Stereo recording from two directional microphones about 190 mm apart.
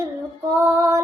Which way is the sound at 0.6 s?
15° right (ahead or behind).